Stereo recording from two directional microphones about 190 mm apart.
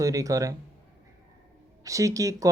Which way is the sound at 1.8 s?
15° right (ahead or behind).